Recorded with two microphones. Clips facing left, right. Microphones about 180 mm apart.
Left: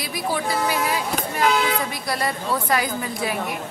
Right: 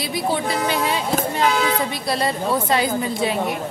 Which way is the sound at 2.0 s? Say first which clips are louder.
Right 4 dB; 25° right (ahead or behind).